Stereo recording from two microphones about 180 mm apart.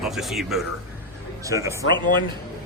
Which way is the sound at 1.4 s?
15° right (ahead or behind).